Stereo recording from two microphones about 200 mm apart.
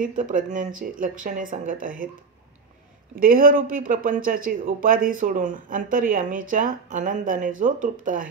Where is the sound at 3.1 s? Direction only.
45° right (ahead or behind).